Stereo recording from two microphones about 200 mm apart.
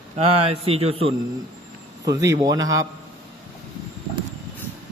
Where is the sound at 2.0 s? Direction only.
20° right (ahead or behind).